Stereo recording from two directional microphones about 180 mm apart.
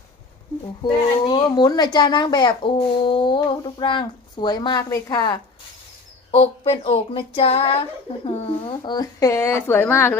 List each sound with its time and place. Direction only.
0.8 s speech: 25° left (ahead or behind)
6.3 s a sound: 30° left (ahead or behind)
8.2 s speech: 30° left (ahead or behind); by 10.2 s 10° left (ahead or behind)